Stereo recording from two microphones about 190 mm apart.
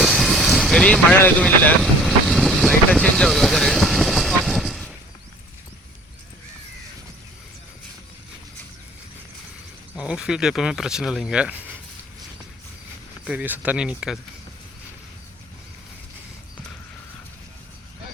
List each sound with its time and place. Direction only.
0.0 s vehicle: centre (ahead or behind)
9.9 s speech: 5° right (ahead or behind)
13.2 s speech: 10° right (ahead or behind)